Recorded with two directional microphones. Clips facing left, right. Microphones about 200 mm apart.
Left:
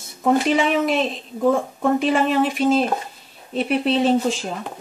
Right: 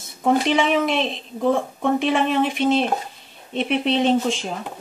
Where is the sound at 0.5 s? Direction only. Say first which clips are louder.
Left 1 dB; centre (ahead or behind).